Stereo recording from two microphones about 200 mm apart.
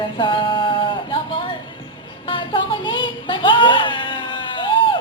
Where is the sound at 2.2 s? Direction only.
25° left (ahead or behind).